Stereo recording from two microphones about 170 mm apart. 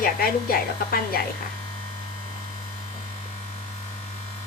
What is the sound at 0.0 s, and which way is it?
Speech, 60° left (ahead or behind).